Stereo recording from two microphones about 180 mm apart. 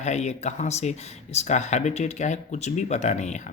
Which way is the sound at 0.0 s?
40° left (ahead or behind).